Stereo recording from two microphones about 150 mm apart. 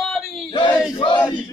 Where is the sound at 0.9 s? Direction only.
30° left (ahead or behind).